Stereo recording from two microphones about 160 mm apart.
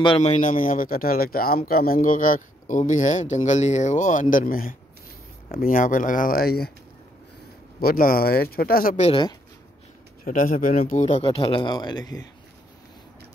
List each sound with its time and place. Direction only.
0.2 s speech: 50° left (ahead or behind); by 6.7 s 75° left (ahead or behind)
7.8 s speech: 65° left (ahead or behind)
9.0 s speech: 30° left (ahead or behind)
10.2 s speech: 55° left (ahead or behind); by 12.2 s 25° left (ahead or behind)